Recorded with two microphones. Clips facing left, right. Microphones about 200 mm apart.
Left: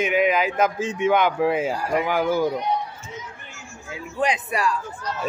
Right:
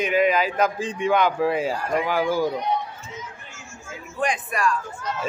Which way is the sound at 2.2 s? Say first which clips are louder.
Left 1 dB; 10° right (ahead or behind).